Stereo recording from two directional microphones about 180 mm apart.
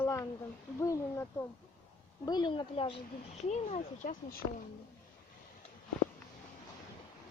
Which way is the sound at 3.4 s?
40° left (ahead or behind).